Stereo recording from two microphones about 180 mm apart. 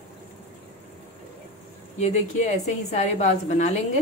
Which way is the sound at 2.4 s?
40° left (ahead or behind).